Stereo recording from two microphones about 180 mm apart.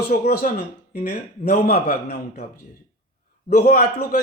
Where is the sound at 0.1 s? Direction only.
55° left (ahead or behind).